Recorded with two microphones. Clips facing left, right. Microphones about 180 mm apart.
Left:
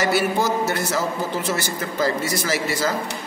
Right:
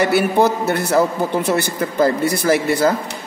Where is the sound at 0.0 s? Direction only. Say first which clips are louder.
Right 5 dB; 60° right (ahead or behind).